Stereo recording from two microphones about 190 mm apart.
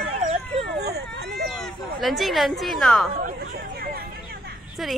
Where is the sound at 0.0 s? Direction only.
35° right (ahead or behind).